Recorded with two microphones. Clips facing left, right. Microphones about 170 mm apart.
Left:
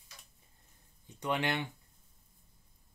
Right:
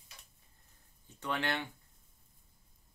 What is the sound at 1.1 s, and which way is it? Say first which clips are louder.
Speech: left 3 dB; 15° left (ahead or behind).